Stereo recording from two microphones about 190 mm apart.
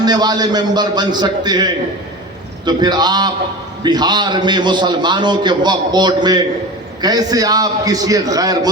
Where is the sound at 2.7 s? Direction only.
20° right (ahead or behind).